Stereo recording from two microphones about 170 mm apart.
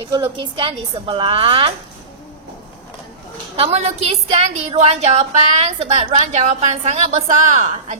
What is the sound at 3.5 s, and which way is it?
A woman's voice, 35° right (ahead or behind).